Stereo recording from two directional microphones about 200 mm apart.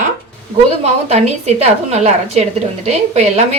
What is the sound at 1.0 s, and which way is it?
Speech, 30° right (ahead or behind).